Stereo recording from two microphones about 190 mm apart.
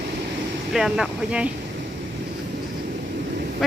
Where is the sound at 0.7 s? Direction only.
5° right (ahead or behind).